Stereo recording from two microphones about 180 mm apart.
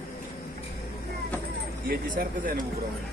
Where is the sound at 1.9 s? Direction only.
55° right (ahead or behind).